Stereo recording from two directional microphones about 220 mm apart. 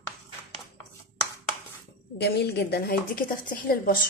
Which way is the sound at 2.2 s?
45° left (ahead or behind).